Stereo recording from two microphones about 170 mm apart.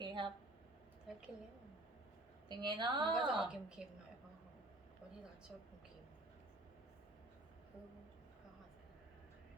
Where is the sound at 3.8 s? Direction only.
5° right (ahead or behind).